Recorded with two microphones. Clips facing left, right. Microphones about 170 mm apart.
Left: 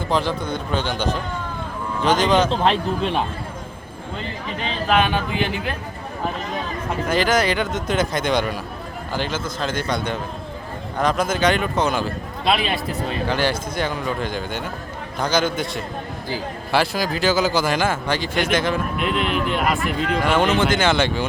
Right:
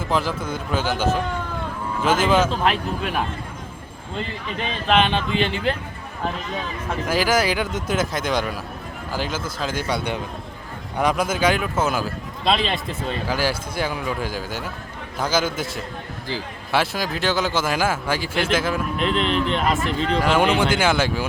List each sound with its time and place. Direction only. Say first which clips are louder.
0.1 s a man's voice: left 1 dB; 5° right (ahead or behind)
2.5 s speech: left 3 dB; 30° left (ahead or behind)
5.0 s a man's voice: even; 10° left (ahead or behind)
7.1 s a man's voice: left 1 dB; 5° right (ahead or behind)
18.9 s a man's voice: right 1 dB; 5° left (ahead or behind)
20.0 s speech: even; 30° right (ahead or behind)
20.2 s speech: left 1 dB; 10° right (ahead or behind)